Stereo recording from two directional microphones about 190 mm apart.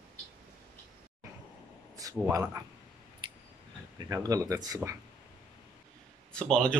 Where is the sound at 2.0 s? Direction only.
20° right (ahead or behind).